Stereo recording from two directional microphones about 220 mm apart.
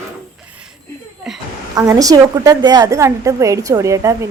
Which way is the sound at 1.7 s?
15° right (ahead or behind).